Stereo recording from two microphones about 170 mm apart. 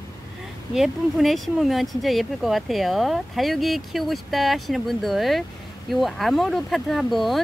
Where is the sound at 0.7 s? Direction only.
Centre (ahead or behind).